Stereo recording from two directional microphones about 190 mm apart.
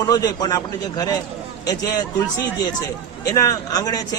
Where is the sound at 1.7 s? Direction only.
20° left (ahead or behind).